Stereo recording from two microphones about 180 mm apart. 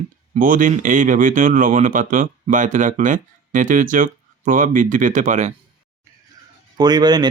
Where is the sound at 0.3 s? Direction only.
50° right (ahead or behind).